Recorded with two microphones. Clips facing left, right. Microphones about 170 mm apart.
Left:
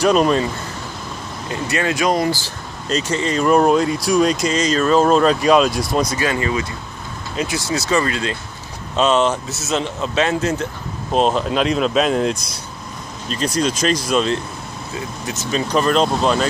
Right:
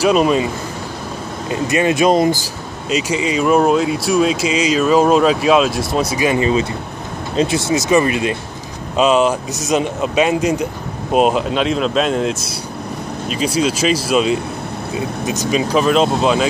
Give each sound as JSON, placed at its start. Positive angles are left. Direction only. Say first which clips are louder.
{"t": 0.0, "sound": "speech", "louder": "right 1 dB", "side_deg": -5}
{"t": 1.5, "sound": "speech", "louder": "right 5 dB", "side_deg": -20}
{"t": 2.9, "sound": "speech", "louder": "right 2 dB", "side_deg": -10}
{"t": 15.7, "sound": "speech", "louder": "right 1 dB", "side_deg": -5}